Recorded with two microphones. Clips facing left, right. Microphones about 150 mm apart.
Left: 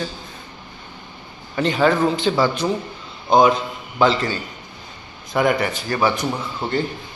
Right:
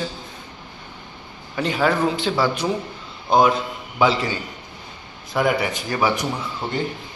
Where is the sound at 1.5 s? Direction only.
5° right (ahead or behind).